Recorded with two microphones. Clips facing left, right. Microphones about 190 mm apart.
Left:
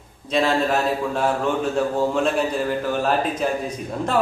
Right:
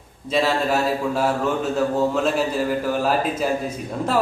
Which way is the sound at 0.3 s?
5° right (ahead or behind).